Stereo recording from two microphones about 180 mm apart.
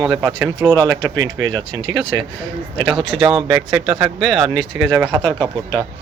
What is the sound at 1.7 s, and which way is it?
Speech, 90° right.